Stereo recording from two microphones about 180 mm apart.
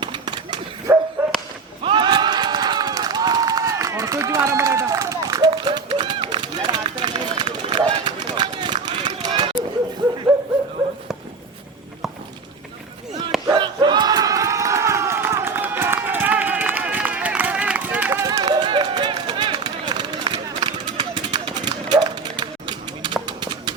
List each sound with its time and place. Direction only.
0.0 s dog: 25° right (ahead or behind)
1.8 s crowd: 25° right (ahead or behind)
13.5 s crowd: 25° right (ahead or behind)